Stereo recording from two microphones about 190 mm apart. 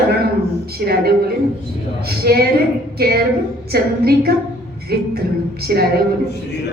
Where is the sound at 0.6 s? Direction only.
55° right (ahead or behind).